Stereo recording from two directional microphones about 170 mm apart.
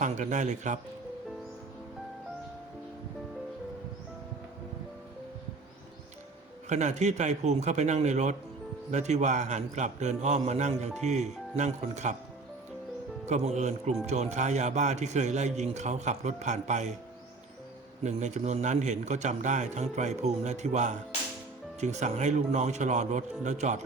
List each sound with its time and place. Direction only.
0.0 s speech: 45° right (ahead or behind)
6.7 s speech: 45° right (ahead or behind)
13.2 s speech: 40° right (ahead or behind)
18.0 s speech: 45° right (ahead or behind)